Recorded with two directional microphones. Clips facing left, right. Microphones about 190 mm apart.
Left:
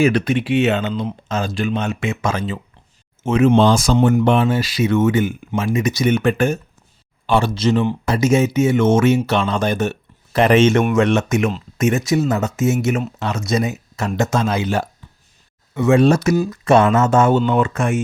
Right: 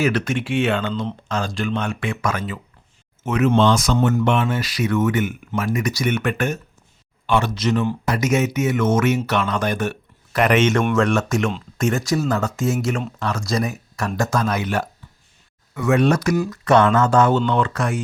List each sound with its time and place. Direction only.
0.1 s speech: 20° left (ahead or behind)
11.3 s speech: centre (ahead or behind)
12.3 s speech: 20° left (ahead or behind)
12.9 s speech: 5° left (ahead or behind)
13.5 s speech: 25° left (ahead or behind)
17.3 s speech: 10° left (ahead or behind)
17.7 s speech: 25° left (ahead or behind)